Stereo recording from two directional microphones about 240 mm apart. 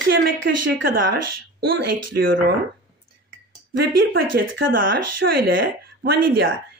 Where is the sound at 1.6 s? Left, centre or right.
Right.